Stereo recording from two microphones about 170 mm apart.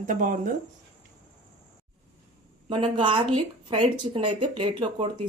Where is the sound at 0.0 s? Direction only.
50° right (ahead or behind).